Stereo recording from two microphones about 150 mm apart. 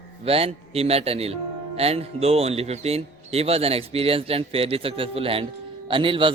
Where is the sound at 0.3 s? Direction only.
40° right (ahead or behind).